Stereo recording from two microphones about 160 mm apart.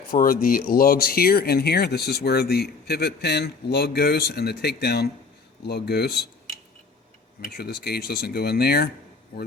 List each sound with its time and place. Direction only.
0.1 s speech: 60° left (ahead or behind); by 6.1 s 90° left
7.5 s speech: 90° left; by 8.9 s 75° left (ahead or behind)